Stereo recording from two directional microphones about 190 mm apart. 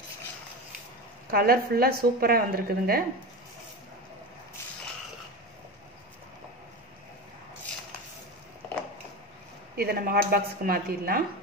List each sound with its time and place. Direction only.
1.2 s a woman's voice: 50° right (ahead or behind)
9.8 s a woman's voice: 50° right (ahead or behind)